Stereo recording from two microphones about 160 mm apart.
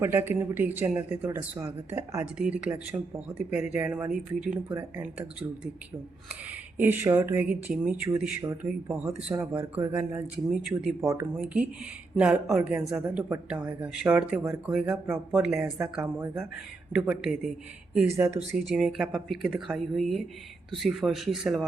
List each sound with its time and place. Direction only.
0.0 s speech: 15° right (ahead or behind)
6.5 s speech: 10° right (ahead or behind)
11.3 s speech: 5° right (ahead or behind)
15.0 s speech: 15° right (ahead or behind)
16.9 s speech: 5° right (ahead or behind)